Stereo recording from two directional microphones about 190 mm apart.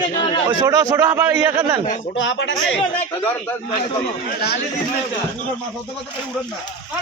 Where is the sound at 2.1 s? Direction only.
75° left (ahead or behind).